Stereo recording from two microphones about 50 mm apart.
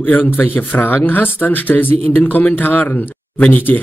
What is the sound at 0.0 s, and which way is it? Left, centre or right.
Speech, left.